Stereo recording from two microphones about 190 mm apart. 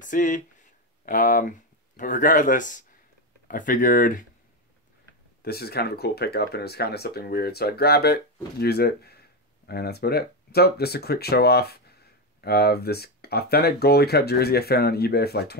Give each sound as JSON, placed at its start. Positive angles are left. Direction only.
{"t": 0.0, "sound": "speech", "side_deg": 45}
{"t": 5.4, "sound": "speech", "side_deg": 55}